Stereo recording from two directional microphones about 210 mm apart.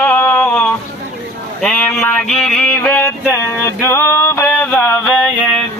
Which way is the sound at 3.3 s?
10° left (ahead or behind).